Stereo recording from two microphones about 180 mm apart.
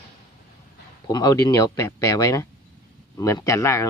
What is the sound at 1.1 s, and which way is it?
Speech, 20° left (ahead or behind).